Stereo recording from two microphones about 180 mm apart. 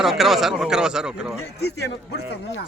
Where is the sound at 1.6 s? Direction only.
65° left (ahead or behind).